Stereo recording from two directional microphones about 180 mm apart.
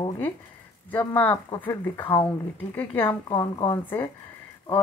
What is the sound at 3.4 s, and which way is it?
Speech, 15° left (ahead or behind).